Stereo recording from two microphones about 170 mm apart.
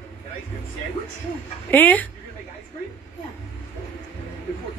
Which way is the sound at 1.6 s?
10° left (ahead or behind).